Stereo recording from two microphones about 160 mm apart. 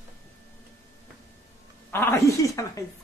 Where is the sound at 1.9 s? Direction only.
15° left (ahead or behind).